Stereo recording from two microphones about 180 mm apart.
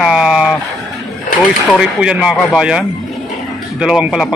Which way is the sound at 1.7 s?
5° right (ahead or behind).